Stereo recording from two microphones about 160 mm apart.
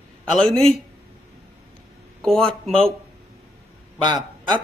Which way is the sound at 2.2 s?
5° left (ahead or behind).